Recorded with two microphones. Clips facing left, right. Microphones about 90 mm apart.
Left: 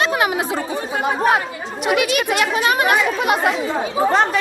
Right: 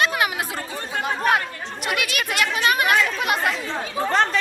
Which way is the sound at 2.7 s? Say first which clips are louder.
Left 2 dB; 20° left (ahead or behind).